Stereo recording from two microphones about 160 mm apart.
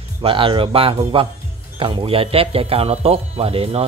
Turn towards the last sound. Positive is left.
turn(degrees=-40)  # may be behind; listen again after turning